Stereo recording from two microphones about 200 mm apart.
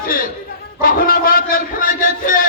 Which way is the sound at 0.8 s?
45° left (ahead or behind).